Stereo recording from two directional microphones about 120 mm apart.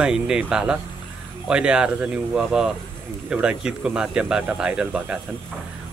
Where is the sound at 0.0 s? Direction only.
5° right (ahead or behind).